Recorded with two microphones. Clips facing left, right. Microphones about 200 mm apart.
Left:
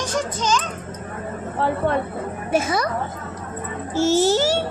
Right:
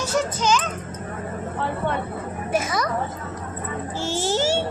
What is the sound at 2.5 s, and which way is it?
Speech, 30° left (ahead or behind).